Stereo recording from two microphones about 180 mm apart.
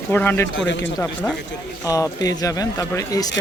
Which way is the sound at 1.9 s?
20° left (ahead or behind).